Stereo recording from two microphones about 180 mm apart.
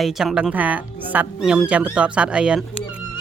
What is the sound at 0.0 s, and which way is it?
Speech, centre (ahead or behind).